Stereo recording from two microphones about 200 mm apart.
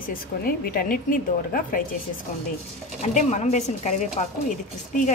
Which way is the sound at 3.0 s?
35° left (ahead or behind).